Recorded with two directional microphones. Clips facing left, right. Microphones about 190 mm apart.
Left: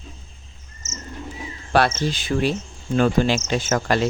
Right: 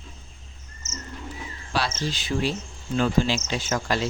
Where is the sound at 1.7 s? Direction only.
55° left (ahead or behind).